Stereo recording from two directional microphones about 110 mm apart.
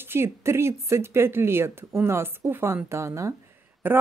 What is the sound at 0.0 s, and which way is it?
Speech, 20° right (ahead or behind).